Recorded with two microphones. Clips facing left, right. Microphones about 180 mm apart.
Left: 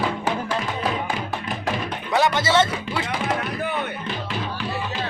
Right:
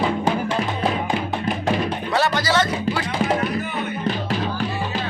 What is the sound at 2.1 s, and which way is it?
Music, 20° left (ahead or behind).